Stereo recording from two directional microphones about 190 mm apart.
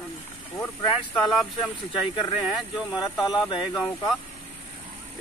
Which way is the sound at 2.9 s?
20° left (ahead or behind).